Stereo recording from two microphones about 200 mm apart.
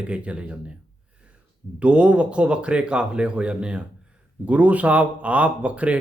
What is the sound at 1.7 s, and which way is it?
Speech, 5° right (ahead or behind).